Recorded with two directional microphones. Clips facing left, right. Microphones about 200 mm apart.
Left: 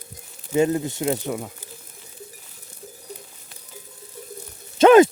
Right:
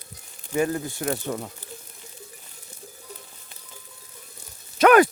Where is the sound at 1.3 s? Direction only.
10° left (ahead or behind).